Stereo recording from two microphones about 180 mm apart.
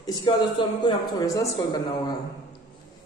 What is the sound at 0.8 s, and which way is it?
A man's voice, 20° left (ahead or behind).